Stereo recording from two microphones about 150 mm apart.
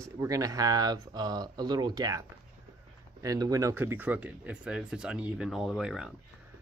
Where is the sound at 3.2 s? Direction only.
25° right (ahead or behind).